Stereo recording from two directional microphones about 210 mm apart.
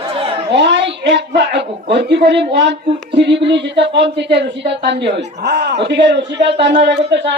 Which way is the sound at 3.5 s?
55° right (ahead or behind).